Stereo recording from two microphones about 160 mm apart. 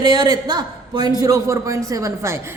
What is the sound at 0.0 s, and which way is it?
A man's voice, 25° right (ahead or behind).